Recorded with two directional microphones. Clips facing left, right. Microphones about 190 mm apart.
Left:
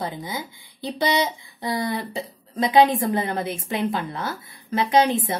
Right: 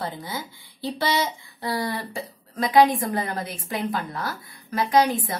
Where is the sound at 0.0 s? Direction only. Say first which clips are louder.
Left 2 dB; 15° left (ahead or behind).